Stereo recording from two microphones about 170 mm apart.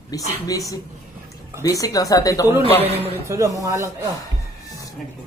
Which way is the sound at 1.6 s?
20° left (ahead or behind).